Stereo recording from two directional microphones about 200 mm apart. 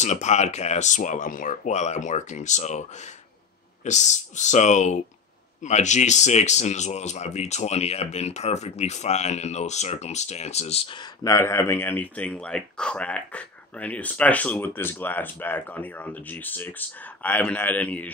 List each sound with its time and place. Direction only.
0.0 s speech: 35° left (ahead or behind); by 18.1 s 10° left (ahead or behind)